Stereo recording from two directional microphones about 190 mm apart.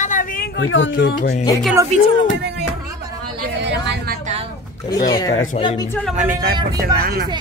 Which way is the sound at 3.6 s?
65° right (ahead or behind).